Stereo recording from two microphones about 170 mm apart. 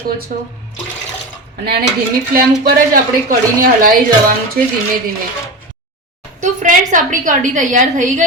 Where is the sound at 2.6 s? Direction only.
55° right (ahead or behind).